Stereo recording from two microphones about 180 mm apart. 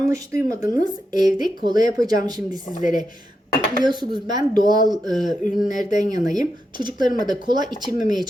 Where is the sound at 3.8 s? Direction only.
25° right (ahead or behind).